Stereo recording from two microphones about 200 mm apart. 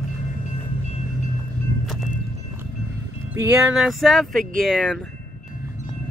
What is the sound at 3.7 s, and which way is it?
Speech, centre (ahead or behind).